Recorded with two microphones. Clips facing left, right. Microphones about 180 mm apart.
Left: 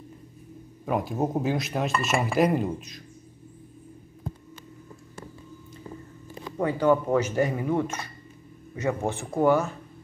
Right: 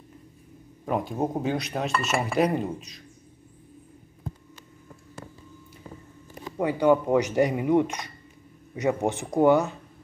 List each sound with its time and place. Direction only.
0.8 s speech: centre (ahead or behind)
6.6 s speech: 15° right (ahead or behind)